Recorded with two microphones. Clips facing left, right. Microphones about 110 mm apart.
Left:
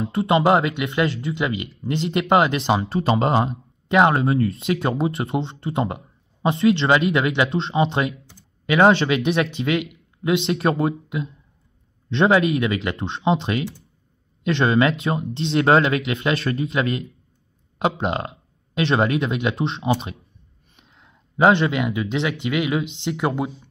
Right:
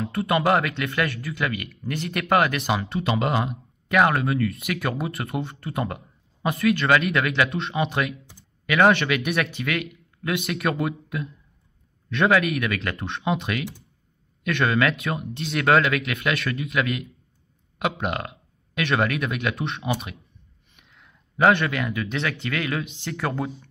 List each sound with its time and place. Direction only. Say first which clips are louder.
0.0 s speech: left 4 dB; 25° left (ahead or behind)